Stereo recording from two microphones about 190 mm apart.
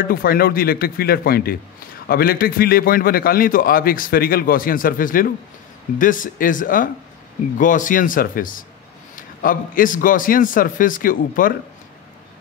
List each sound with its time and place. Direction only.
0.0 s a man's voice: 50° left (ahead or behind)